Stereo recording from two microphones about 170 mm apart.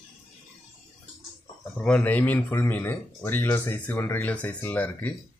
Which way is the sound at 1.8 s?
10° left (ahead or behind).